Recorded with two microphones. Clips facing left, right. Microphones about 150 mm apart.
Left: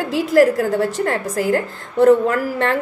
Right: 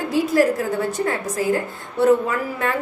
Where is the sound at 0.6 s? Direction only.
90° left.